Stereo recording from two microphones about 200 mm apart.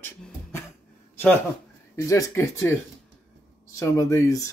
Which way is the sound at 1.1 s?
10° left (ahead or behind).